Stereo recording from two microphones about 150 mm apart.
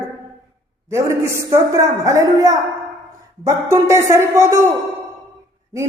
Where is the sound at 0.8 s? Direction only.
20° right (ahead or behind).